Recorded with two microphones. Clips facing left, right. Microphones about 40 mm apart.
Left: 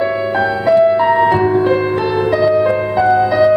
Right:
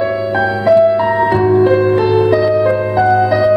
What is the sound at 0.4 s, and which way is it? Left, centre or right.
Music, centre.